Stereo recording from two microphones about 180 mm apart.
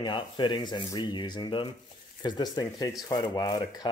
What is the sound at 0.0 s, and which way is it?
Speech, 25° left (ahead or behind).